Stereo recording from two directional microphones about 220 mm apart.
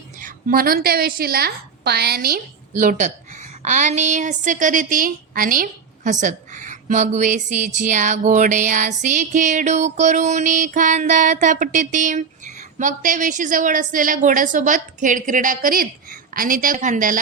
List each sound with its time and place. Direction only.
0.2 s a woman's voice: 40° right (ahead or behind)